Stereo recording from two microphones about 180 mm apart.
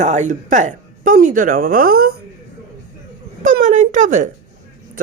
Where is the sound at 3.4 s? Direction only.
45° right (ahead or behind).